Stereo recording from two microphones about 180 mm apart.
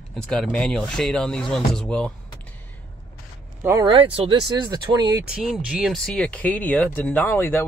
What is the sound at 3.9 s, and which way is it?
Speech, 30° right (ahead or behind).